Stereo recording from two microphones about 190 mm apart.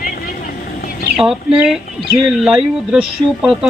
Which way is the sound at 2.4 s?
5° right (ahead or behind).